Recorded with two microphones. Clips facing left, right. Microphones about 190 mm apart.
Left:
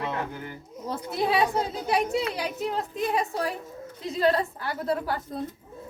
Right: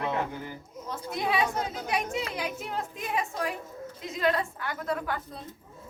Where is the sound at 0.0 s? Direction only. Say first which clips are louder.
Right 1 dB; centre (ahead or behind).